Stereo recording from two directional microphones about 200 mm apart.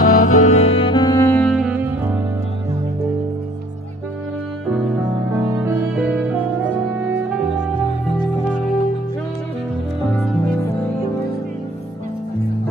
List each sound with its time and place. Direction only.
0.0 s music: 40° left (ahead or behind); by 1.9 s 5° right (ahead or behind)
5.3 s music: 10° right (ahead or behind)